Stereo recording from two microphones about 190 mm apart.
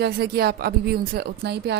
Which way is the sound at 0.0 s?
55° right (ahead or behind).